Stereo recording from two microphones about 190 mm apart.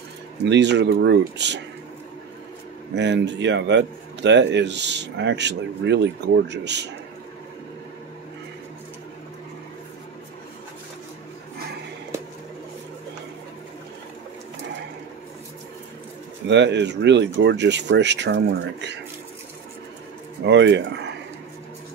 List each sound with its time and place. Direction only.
0.5 s speech: 65° right (ahead or behind)
3.0 s speech: 65° right (ahead or behind)
16.4 s speech: 65° right (ahead or behind)
20.4 s speech: 70° right (ahead or behind)